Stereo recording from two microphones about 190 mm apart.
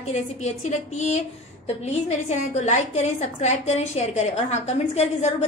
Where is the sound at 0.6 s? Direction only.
35° left (ahead or behind).